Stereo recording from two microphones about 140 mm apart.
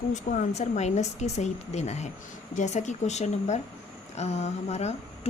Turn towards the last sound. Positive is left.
turn(degrees=50)  # may be behind; listen again after turning